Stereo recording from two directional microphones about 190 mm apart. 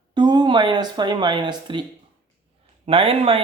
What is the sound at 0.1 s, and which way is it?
Speech, 25° right (ahead or behind).